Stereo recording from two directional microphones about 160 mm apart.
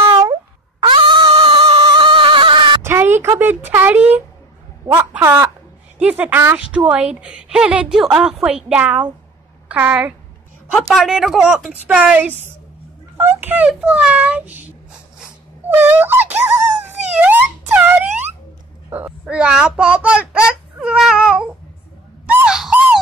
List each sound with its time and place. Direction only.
0.0 s cat: 25° right (ahead or behind)
2.8 s a child's voice: 15° right (ahead or behind)
10.7 s a woman's voice: centre (ahead or behind)
15.7 s speech: 15° right (ahead or behind)
17.2 s music: 10° right (ahead or behind)
18.9 s a sound: 10° right (ahead or behind)
22.2 s dog: 10° right (ahead or behind)